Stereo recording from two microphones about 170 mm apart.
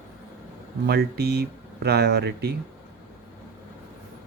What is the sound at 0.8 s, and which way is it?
Speech, 75° right (ahead or behind).